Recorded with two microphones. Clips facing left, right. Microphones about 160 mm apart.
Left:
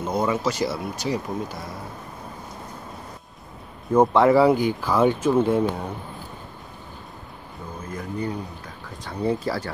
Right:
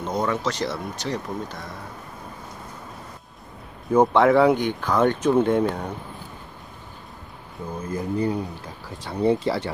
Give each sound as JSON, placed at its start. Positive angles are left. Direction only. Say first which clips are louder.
{"t": 0.0, "sound": "speech", "louder": "left 1 dB", "side_deg": 5}
{"t": 3.9, "sound": "speech", "louder": "even", "side_deg": 0}
{"t": 7.9, "sound": "speech", "louder": "right 5 dB", "side_deg": -30}